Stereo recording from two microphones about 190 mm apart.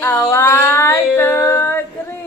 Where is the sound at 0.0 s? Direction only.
10° left (ahead or behind).